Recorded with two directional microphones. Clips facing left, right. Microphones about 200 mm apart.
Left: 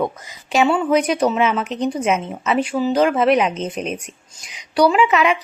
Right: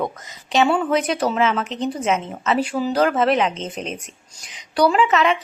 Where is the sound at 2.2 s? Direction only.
5° left (ahead or behind).